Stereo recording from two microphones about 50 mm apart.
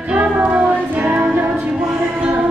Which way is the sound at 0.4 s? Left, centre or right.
Right.